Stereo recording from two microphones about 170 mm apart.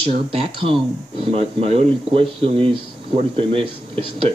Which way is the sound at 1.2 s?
35° right (ahead or behind).